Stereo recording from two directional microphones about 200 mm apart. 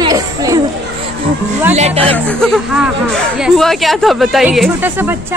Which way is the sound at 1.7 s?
35° right (ahead or behind).